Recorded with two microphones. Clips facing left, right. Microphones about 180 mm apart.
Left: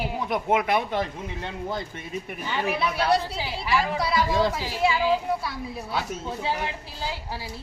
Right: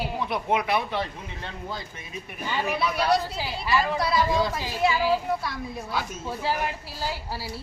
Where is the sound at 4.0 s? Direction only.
Centre (ahead or behind).